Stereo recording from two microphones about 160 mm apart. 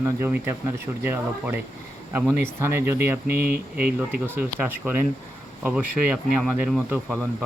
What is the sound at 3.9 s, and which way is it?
Speech, 10° right (ahead or behind).